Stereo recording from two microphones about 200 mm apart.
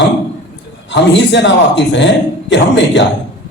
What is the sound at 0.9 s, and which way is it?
A man's voice, 60° left (ahead or behind).